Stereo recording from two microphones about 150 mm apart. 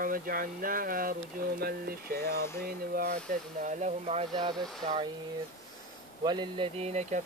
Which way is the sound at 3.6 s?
50° right (ahead or behind).